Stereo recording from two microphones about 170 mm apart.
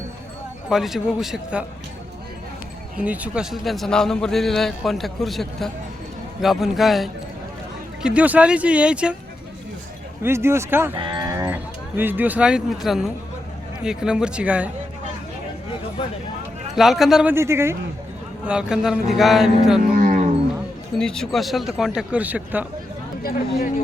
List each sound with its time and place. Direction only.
0.7 s a man's voice: centre (ahead or behind)
3.0 s a man's voice: 10° right (ahead or behind)
10.2 s speech: 15° right (ahead or behind)
10.9 s livestock: 25° right (ahead or behind); by 13.1 s centre (ahead or behind)
13.8 s a man's voice: 5° right (ahead or behind)
16.7 s a man's voice: centre (ahead or behind)
17.3 s speech: 15° right (ahead or behind)
18.4 s a man's voice: 5° right (ahead or behind)
19.8 s a sound: 50° right (ahead or behind)
21.0 s a man's voice: 5° left (ahead or behind)
23.2 s speech: 60° left (ahead or behind)